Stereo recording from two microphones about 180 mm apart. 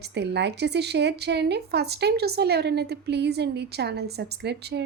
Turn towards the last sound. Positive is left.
turn(degrees=-70)  # may be behind; listen again after turning